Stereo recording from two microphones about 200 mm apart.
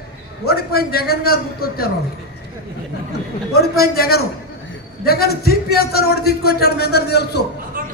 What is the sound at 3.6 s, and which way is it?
A man's voice, 50° left (ahead or behind).